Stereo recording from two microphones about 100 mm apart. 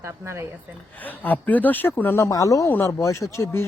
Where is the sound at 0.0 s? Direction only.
25° right (ahead or behind).